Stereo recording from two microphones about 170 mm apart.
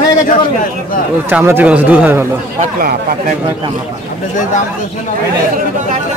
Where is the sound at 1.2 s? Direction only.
10° right (ahead or behind).